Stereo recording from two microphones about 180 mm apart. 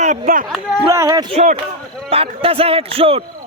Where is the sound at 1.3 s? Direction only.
40° right (ahead or behind).